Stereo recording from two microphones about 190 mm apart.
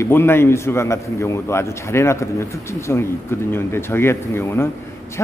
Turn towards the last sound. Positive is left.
turn(degrees=15)  # may be behind; listen again after turning